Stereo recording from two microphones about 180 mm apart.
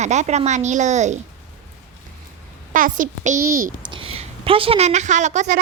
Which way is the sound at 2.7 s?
45° right (ahead or behind).